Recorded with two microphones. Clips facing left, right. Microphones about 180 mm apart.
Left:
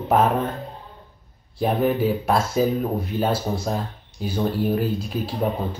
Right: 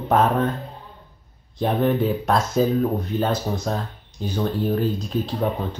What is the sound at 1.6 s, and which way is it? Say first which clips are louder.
Speech: even; 5° left (ahead or behind).